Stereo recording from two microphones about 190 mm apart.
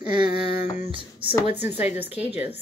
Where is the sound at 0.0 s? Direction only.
25° right (ahead or behind).